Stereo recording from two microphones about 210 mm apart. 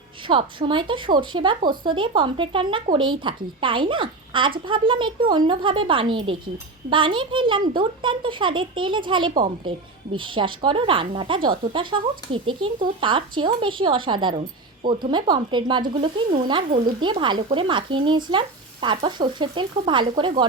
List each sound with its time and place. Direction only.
0.3 s speech: 25° right (ahead or behind)